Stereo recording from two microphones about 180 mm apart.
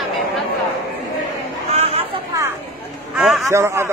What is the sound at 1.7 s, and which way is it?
Chatter, 35° right (ahead or behind).